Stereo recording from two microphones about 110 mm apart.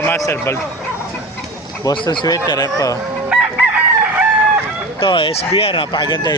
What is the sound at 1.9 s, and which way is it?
Speech, 45° left (ahead or behind).